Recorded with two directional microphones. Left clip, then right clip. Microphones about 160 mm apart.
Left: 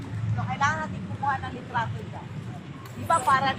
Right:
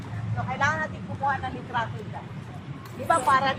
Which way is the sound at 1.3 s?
65° right (ahead or behind).